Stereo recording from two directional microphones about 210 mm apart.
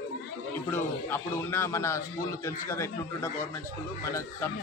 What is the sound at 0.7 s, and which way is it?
A man's voice, 10° left (ahead or behind).